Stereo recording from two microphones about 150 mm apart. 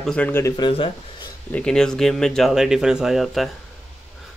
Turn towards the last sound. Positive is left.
turn(degrees=0)  # may be behind; listen again after turning